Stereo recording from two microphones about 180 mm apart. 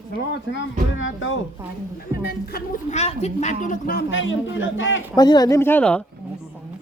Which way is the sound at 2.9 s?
35° left (ahead or behind).